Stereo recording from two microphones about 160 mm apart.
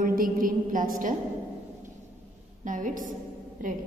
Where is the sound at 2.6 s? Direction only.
55° right (ahead or behind).